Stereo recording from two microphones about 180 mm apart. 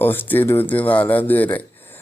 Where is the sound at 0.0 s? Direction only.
10° left (ahead or behind).